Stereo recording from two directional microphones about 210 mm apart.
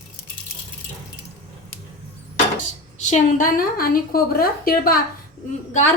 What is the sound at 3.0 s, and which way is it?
A woman's voice, 35° left (ahead or behind).